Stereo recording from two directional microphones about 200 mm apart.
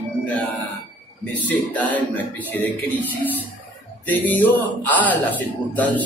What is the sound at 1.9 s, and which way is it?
Speech, 10° left (ahead or behind).